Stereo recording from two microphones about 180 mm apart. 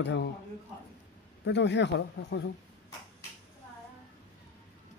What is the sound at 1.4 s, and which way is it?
Speech, 75° left (ahead or behind).